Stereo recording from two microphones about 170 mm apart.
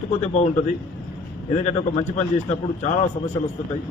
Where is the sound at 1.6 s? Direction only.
40° left (ahead or behind).